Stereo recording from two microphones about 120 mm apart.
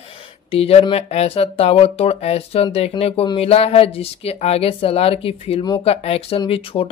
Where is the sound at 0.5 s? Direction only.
55° left (ahead or behind).